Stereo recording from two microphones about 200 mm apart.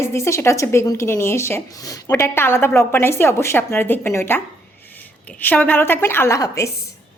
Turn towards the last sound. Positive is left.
turn(degrees=15)  # may be behind; listen again after turning